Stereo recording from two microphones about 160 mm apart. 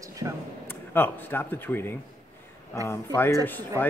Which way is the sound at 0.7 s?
10° left (ahead or behind).